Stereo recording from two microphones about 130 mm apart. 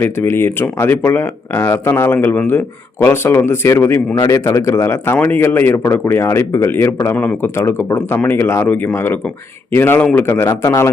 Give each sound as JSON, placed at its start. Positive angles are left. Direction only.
{"t": 0.0, "sound": "speech", "side_deg": 20}